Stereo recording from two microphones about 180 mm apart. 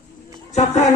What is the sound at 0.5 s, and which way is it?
Speech, 40° left (ahead or behind).